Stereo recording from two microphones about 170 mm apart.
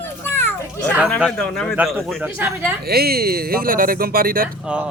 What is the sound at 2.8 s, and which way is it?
Speech, 65° right (ahead or behind).